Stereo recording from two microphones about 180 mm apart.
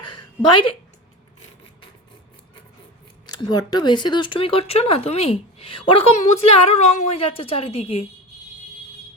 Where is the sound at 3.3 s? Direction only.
25° left (ahead or behind).